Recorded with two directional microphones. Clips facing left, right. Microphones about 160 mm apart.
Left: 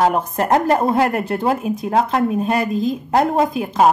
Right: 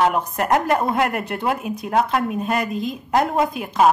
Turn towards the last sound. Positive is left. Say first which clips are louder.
# left 2 dB
turn(degrees=35)  # may be behind; listen again after turning